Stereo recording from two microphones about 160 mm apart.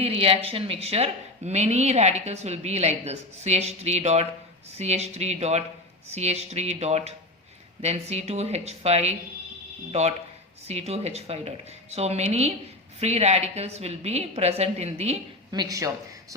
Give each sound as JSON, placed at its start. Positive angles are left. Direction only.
{"t": 0.0, "sound": "a woman's voice", "side_deg": -35}